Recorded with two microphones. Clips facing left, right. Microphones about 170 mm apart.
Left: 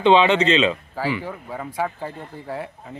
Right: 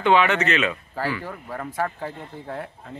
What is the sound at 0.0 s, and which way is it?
Speech, 25° left (ahead or behind).